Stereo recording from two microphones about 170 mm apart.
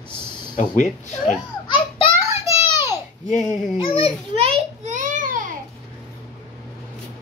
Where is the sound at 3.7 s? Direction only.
35° left (ahead or behind).